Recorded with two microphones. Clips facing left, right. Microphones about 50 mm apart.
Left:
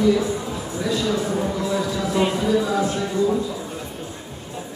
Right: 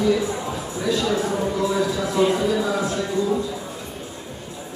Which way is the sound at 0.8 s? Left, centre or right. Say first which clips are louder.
Right 1 dB; centre.